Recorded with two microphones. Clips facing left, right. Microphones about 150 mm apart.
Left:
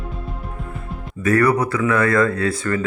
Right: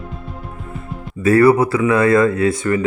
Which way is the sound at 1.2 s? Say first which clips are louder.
Right 5 dB; 25° right (ahead or behind).